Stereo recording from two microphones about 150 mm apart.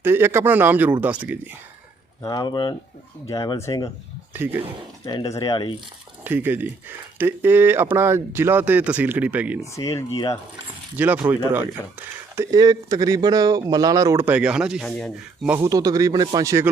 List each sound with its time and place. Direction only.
0.0 s speech: 15° right (ahead or behind)
2.2 s speech: 25° left (ahead or behind)
5.0 s speech: 20° left (ahead or behind)
6.2 s speech: 15° right (ahead or behind)
10.9 s speech: 10° right (ahead or behind)
14.8 s speech: 5° left (ahead or behind)
15.4 s speech: 20° right (ahead or behind)